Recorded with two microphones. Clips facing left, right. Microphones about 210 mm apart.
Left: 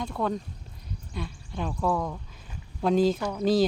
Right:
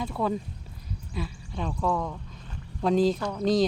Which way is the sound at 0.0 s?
5° right (ahead or behind).